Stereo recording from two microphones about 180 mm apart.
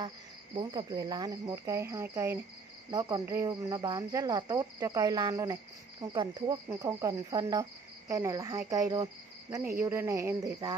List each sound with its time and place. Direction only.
0.6 s speech: 25° right (ahead or behind)